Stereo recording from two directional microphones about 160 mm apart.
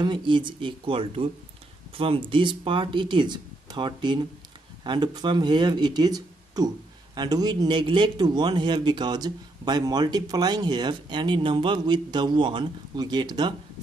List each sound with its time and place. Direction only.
0.0 s speech: 30° right (ahead or behind)